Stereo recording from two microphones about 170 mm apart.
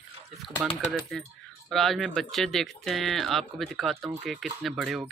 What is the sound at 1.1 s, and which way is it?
Speech, 5° left (ahead or behind).